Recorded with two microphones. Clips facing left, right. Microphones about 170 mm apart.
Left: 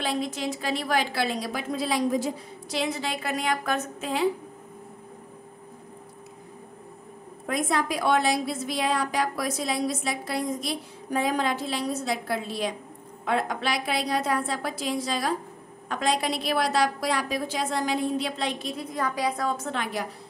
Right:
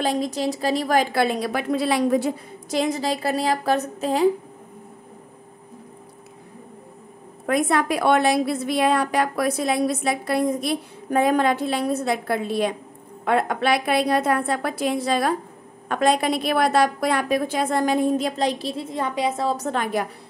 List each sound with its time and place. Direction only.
0.0 s a woman's voice: 40° right (ahead or behind); by 2.8 s 60° right (ahead or behind)
2.8 s a woman's voice: 40° right (ahead or behind)
7.4 s a woman's voice: 65° right (ahead or behind); by 19.5 s 25° right (ahead or behind)
19.5 s a woman's voice: 40° right (ahead or behind)